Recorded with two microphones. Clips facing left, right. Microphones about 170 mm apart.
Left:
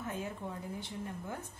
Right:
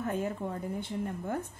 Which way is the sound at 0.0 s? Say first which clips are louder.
Right 7 dB; 55° right (ahead or behind).